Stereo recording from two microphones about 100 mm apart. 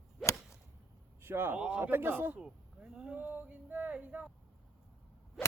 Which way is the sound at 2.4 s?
5° right (ahead or behind).